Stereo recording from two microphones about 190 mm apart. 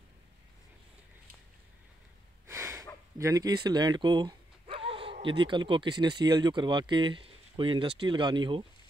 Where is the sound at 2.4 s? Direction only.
15° right (ahead or behind).